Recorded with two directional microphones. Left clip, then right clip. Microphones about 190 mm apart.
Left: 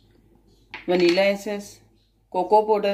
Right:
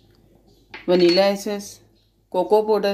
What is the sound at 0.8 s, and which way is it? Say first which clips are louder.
Speech: right 3 dB; 35° right (ahead or behind).